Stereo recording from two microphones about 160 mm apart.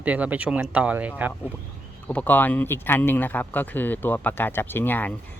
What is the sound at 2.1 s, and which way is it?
Speech, 10° left (ahead or behind).